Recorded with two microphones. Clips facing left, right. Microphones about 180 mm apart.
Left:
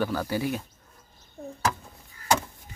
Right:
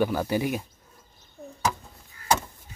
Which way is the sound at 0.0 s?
15° right (ahead or behind).